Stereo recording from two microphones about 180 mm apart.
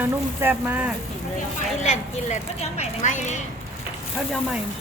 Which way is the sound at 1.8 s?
40° left (ahead or behind).